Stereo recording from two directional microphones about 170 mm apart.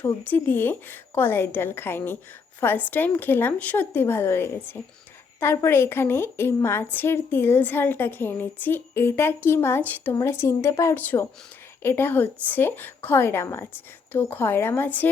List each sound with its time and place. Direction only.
0.3 s a woman's voice: 10° left (ahead or behind)